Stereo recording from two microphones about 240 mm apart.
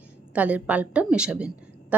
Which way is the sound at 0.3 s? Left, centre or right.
Centre.